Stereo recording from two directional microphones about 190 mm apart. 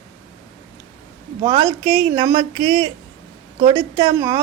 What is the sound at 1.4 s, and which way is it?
Speech, 30° right (ahead or behind).